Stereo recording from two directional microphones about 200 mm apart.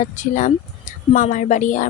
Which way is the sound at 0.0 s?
40° left (ahead or behind).